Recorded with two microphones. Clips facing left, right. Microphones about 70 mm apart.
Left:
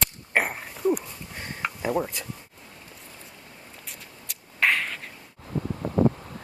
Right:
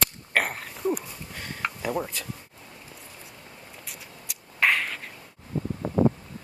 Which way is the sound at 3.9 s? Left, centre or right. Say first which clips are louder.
Right 1 dB; centre.